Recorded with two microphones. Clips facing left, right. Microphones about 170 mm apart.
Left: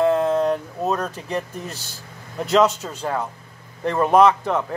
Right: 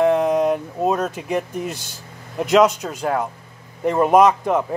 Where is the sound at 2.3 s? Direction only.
10° right (ahead or behind).